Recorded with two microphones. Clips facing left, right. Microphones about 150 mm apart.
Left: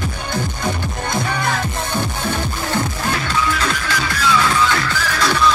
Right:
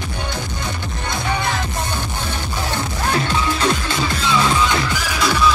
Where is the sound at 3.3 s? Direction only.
25° right (ahead or behind); by 5.5 s 10° right (ahead or behind).